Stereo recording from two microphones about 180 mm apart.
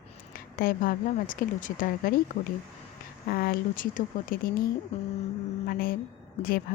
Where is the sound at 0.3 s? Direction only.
55° left (ahead or behind).